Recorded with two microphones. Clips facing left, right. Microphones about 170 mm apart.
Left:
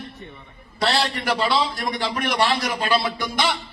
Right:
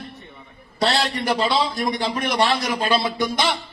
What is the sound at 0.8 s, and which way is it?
A man's voice, 20° right (ahead or behind).